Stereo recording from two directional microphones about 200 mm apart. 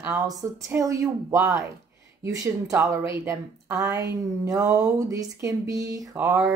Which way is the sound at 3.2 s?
15° right (ahead or behind).